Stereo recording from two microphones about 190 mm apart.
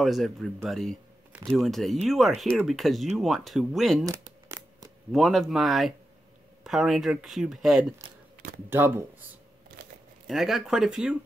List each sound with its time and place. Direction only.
0.0 s speech: centre (ahead or behind)
4.0 s a sound: 15° right (ahead or behind)
5.1 s speech: centre (ahead or behind)
10.2 s speech: centre (ahead or behind)